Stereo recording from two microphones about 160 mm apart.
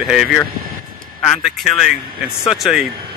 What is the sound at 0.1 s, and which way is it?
Speech, 5° right (ahead or behind).